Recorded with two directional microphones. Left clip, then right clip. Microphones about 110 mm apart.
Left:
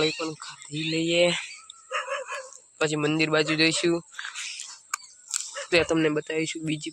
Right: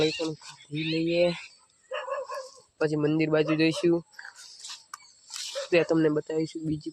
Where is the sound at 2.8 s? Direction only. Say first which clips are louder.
Left 1 dB; 40° right (ahead or behind).